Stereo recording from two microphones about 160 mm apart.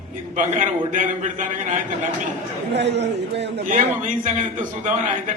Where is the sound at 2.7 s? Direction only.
90° right.